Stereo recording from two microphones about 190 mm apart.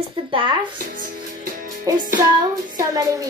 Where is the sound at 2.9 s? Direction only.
15° right (ahead or behind).